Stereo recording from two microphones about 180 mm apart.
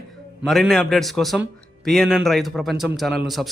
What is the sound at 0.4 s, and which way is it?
A man's voice, centre (ahead or behind).